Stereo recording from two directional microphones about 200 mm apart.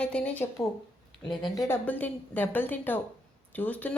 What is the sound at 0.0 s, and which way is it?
Speech, 5° left (ahead or behind).